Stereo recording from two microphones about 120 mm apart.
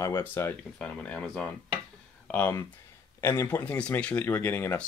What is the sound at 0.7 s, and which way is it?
Speech, 10° left (ahead or behind).